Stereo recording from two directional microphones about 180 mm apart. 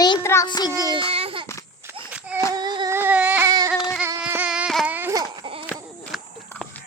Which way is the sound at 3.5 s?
20° right (ahead or behind).